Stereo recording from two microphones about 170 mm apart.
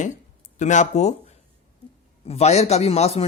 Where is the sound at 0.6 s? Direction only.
45° left (ahead or behind).